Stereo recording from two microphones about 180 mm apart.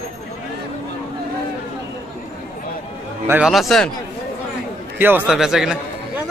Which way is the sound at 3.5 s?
Centre (ahead or behind).